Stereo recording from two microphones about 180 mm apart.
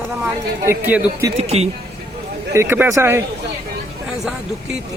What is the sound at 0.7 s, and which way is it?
Speech, 10° right (ahead or behind).